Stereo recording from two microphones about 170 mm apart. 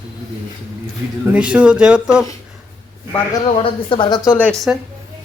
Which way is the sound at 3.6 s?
30° left (ahead or behind).